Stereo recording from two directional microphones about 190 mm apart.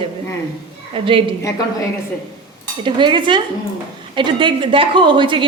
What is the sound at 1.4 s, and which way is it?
Speech, 15° left (ahead or behind).